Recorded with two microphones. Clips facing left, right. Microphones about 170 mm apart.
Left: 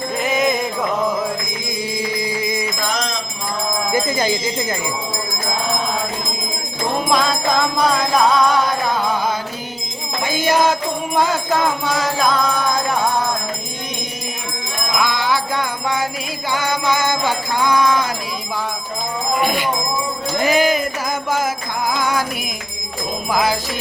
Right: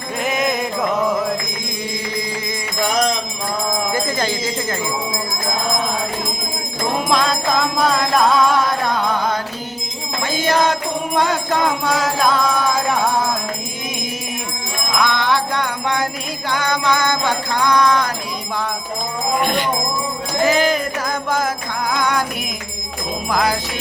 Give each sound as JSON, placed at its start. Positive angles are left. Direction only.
{"t": 0.2, "sound": "music", "side_deg": 0}
{"t": 2.3, "sound": "music", "side_deg": 10}
{"t": 3.9, "sound": "music", "side_deg": 10}
{"t": 7.1, "sound": "music", "side_deg": 0}
{"t": 10.2, "sound": "music", "side_deg": 10}
{"t": 14.9, "sound": "music", "side_deg": 5}
{"t": 19.4, "sound": "music", "side_deg": 10}
{"t": 20.4, "sound": "jingle bell", "side_deg": 10}
{"t": 21.9, "sound": "music", "side_deg": 5}
{"t": 23.3, "sound": "jingle bell", "side_deg": 5}